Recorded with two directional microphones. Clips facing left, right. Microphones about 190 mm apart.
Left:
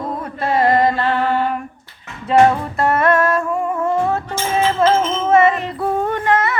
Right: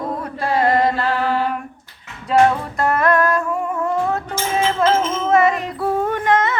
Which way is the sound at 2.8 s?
Centre (ahead or behind).